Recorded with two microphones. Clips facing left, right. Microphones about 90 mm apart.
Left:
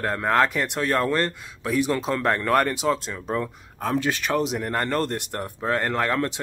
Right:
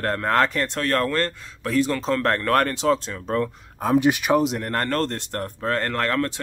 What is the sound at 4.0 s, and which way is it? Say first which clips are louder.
Speech: right 5 dB; 15° right (ahead or behind).